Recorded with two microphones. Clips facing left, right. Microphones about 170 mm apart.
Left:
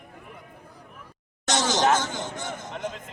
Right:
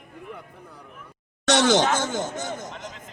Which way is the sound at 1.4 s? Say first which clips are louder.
Right 5 dB; 65° right (ahead or behind).